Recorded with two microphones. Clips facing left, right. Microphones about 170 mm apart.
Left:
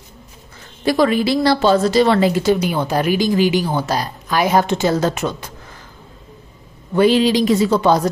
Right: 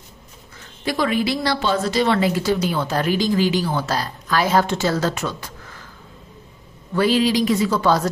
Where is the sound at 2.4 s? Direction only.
15° left (ahead or behind).